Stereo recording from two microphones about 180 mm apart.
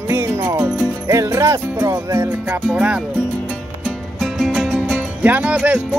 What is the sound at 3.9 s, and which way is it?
Music, centre (ahead or behind).